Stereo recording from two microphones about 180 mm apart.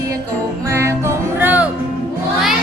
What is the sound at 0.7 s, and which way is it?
Music, 15° right (ahead or behind).